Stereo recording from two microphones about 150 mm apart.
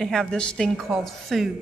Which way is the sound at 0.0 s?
5° left (ahead or behind).